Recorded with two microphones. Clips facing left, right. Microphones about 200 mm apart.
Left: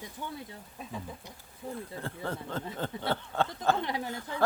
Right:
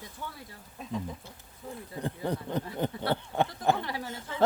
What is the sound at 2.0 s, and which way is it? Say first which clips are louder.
Speech: right 9 dB; 15° right (ahead or behind).